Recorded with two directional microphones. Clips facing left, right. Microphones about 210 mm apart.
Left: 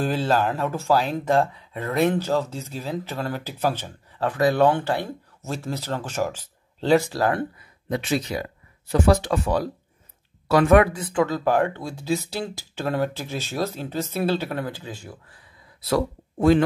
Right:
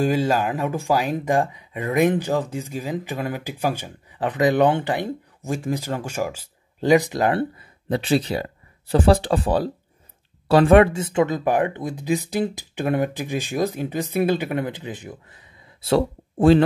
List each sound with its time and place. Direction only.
0.0 s speech: 10° right (ahead or behind)
7.3 s speech: 30° right (ahead or behind)